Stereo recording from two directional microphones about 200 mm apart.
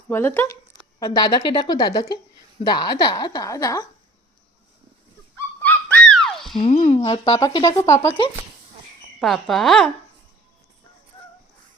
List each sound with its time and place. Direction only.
0.1 s speech: 10° left (ahead or behind)
5.6 s a sound: 5° left (ahead or behind)
6.6 s speech: 30° left (ahead or behind); by 8.1 s 15° left (ahead or behind)
9.2 s speech: centre (ahead or behind)